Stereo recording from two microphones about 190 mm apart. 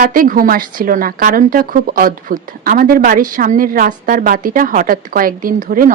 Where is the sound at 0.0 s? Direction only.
45° right (ahead or behind).